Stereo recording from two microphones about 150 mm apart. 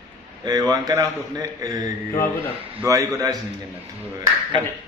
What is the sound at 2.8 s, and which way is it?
Speech, 20° right (ahead or behind).